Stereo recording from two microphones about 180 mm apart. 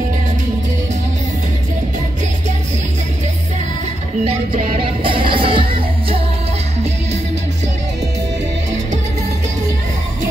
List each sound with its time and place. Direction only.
4.7 s music: 30° right (ahead or behind)